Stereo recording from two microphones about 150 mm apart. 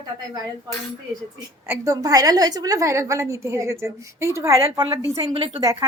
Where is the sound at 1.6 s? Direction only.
20° right (ahead or behind).